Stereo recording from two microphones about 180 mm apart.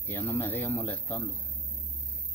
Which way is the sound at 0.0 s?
10° left (ahead or behind).